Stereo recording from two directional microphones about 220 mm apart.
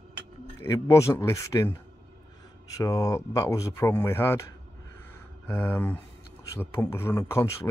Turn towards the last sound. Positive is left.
turn(degrees=10)  # may be behind; listen again after turning